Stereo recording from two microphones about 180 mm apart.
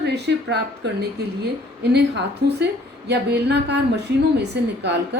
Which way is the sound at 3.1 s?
70° right (ahead or behind).